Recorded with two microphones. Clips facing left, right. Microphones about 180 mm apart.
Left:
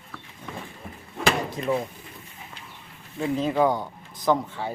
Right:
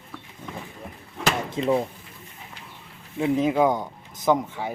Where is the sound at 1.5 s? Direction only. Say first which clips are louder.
Right 3 dB; 20° right (ahead or behind).